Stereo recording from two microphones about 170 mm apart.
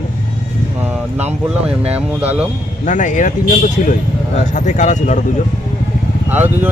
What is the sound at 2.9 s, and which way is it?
Speech, 45° left (ahead or behind).